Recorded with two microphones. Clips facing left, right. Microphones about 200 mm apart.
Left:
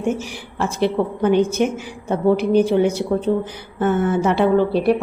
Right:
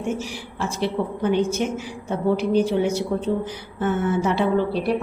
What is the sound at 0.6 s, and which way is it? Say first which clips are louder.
A woman's voice: left 5 dB; 60° left (ahead or behind).